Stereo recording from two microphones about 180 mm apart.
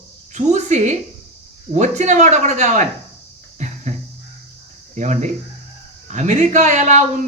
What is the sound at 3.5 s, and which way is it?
Cricket, 40° right (ahead or behind).